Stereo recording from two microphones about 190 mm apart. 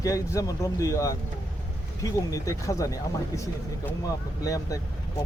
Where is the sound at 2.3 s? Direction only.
15° left (ahead or behind).